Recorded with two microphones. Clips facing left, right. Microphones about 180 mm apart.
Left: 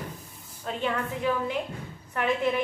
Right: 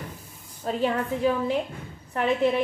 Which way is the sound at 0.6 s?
35° right (ahead or behind).